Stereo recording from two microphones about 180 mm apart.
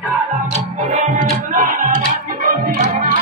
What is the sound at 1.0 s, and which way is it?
Music, 45° right (ahead or behind).